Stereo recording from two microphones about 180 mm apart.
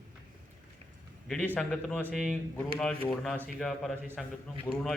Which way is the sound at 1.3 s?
5° left (ahead or behind).